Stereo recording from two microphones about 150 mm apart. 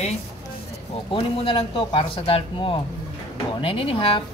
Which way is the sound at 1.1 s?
40° left (ahead or behind).